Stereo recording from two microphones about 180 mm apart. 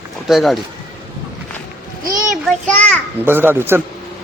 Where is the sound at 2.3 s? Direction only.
5° left (ahead or behind).